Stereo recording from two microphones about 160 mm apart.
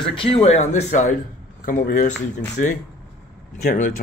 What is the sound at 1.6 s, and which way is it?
A man's voice, 60° left (ahead or behind).